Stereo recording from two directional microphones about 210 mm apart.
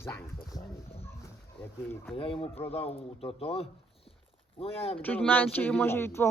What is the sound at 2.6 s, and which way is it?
Speech, 10° left (ahead or behind).